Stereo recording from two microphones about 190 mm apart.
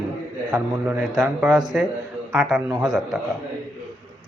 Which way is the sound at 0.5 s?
5° right (ahead or behind).